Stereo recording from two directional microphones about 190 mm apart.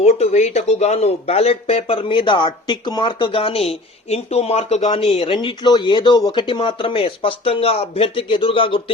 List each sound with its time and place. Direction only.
0.0 s speech: 35° left (ahead or behind)